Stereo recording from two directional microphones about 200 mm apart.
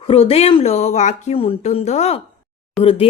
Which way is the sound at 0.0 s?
30° left (ahead or behind).